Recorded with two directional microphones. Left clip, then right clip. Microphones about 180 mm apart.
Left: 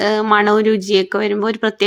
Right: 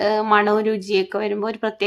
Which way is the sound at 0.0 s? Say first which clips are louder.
Left 3 dB; 20° left (ahead or behind).